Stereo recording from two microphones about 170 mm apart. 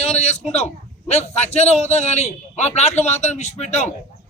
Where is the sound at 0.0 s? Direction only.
40° left (ahead or behind).